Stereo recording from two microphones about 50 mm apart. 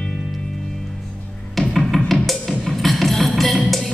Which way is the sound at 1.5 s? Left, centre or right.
Centre.